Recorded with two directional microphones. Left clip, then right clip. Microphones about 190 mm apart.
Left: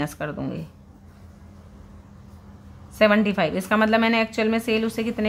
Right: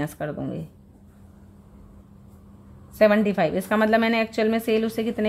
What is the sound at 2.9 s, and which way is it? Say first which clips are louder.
A woman's voice: even; 15° right (ahead or behind).